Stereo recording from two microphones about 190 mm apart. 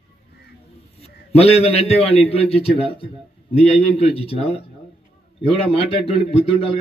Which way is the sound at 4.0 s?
30° left (ahead or behind).